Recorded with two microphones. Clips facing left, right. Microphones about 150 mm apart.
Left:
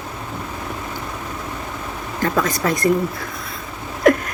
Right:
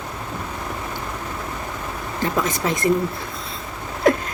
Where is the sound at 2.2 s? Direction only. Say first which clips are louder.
Left 3 dB; 20° right (ahead or behind).